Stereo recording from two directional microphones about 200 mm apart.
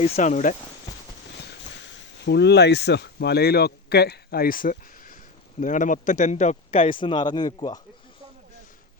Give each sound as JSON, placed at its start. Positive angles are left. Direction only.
{"t": 0.0, "sound": "speech", "side_deg": 35}
{"t": 2.2, "sound": "speech", "side_deg": 55}